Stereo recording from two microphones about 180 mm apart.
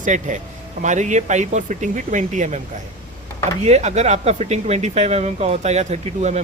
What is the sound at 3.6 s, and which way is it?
Speech, 35° right (ahead or behind).